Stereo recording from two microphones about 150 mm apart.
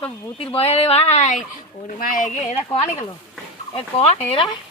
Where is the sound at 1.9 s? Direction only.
60° left (ahead or behind); by 4.2 s 40° left (ahead or behind).